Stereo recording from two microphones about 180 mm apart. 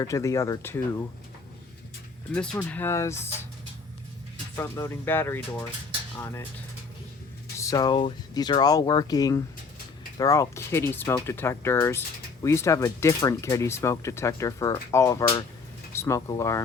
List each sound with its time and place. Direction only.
0.0 s speech: 15° left (ahead or behind)
2.3 s speech: 5° left (ahead or behind)
4.5 s speech: 15° left (ahead or behind)
7.6 s speech: 20° left (ahead or behind)